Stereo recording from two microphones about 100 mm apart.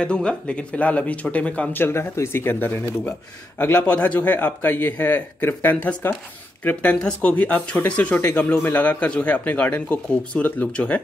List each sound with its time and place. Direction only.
0.0 s speech: 10° left (ahead or behind)